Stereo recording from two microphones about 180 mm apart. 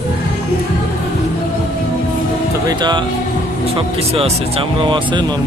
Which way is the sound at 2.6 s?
25° right (ahead or behind).